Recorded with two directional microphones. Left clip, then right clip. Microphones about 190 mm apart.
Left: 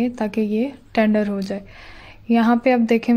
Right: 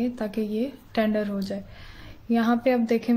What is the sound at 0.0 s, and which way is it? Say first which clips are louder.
Speech: left 6 dB; 35° left (ahead or behind).